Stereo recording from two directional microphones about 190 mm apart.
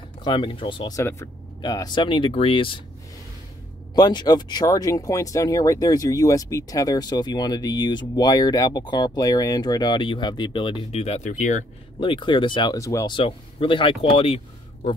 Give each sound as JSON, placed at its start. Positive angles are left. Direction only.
{"t": 0.2, "sound": "speech", "side_deg": 25}
{"t": 3.9, "sound": "speech", "side_deg": 20}
{"t": 12.0, "sound": "speech", "side_deg": 25}